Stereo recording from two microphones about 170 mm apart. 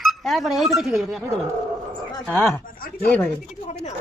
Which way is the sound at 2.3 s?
15° left (ahead or behind).